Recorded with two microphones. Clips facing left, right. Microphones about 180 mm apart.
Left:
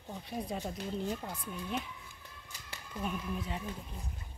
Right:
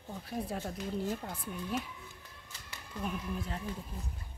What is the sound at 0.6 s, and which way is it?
Speech, 15° left (ahead or behind).